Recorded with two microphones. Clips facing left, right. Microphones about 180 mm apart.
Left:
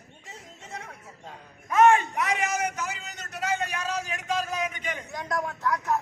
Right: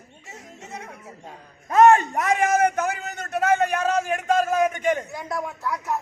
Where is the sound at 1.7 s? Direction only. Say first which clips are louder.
Right 4 dB; 40° right (ahead or behind).